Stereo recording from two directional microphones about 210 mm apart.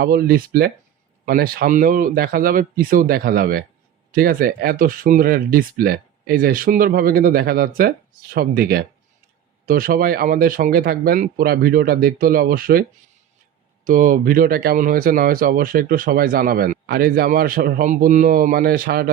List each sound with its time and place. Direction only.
0.0 s speech: 45° right (ahead or behind)
13.8 s speech: 40° right (ahead or behind)